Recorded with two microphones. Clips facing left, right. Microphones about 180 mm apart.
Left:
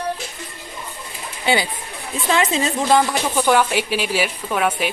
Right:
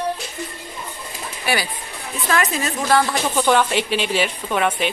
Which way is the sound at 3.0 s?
5° left (ahead or behind).